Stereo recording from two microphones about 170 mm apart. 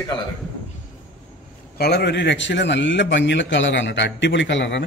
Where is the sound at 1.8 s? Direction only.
75° left (ahead or behind).